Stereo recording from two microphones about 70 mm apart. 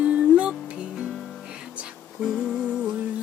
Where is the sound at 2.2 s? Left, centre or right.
Centre.